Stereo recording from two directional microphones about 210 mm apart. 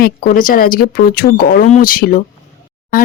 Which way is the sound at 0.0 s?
40° left (ahead or behind).